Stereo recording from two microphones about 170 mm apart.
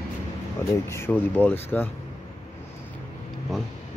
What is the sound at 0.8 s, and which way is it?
Speech, 15° left (ahead or behind).